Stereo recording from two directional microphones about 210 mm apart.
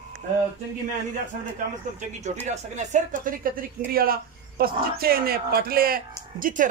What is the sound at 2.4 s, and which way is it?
Speech, 35° right (ahead or behind).